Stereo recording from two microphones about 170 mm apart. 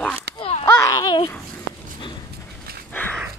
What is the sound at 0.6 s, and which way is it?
Babbling, 20° left (ahead or behind).